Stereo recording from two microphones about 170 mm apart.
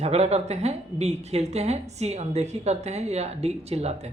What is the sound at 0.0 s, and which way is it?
A woman's voice, 40° right (ahead or behind).